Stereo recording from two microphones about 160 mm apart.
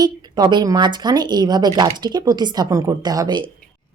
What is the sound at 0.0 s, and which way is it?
Speech, 25° right (ahead or behind).